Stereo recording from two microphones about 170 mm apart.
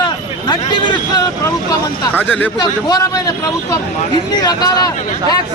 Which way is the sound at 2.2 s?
10° left (ahead or behind).